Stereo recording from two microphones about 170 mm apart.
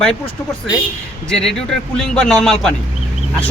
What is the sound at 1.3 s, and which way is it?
A man's voice, 5° left (ahead or behind).